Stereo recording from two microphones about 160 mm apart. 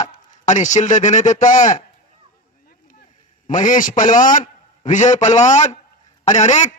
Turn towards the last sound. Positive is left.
turn(degrees=45)  # may be behind; listen again after turning